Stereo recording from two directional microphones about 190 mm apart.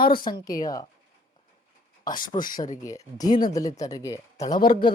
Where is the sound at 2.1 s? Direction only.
45° left (ahead or behind).